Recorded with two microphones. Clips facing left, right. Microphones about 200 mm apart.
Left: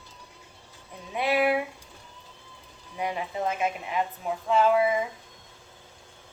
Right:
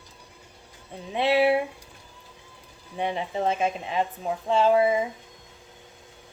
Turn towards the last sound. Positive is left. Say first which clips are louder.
# right 2 dB
turn(degrees=-30)  # may be behind; listen again after turning